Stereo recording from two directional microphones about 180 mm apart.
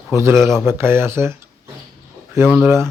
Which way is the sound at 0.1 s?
15° right (ahead or behind).